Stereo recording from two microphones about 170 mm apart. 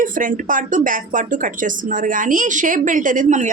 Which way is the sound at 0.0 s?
50° right (ahead or behind).